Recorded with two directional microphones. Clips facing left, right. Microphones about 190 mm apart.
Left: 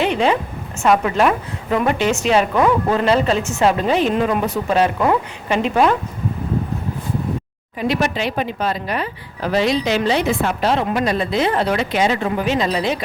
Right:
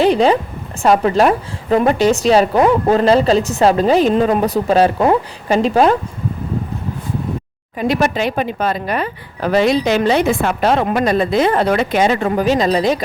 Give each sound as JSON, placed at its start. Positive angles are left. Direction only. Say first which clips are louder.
{"t": 0.0, "sound": "a sound", "louder": "right 5 dB", "side_deg": -35}
{"t": 0.8, "sound": "a woman's voice", "louder": "right 3 dB", "side_deg": -35}
{"t": 7.8, "sound": "speech", "louder": "right 3 dB", "side_deg": -45}